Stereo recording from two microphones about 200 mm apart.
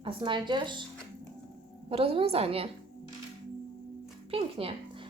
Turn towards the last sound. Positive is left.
turn(degrees=-30)  # may be behind; listen again after turning